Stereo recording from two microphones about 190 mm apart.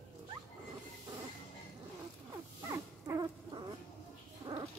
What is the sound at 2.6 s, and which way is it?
Dog, 20° right (ahead or behind).